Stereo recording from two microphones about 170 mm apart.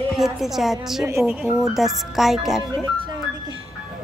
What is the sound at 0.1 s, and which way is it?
A woman's voice, centre (ahead or behind).